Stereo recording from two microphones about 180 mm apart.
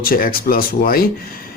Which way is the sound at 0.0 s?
55° left (ahead or behind).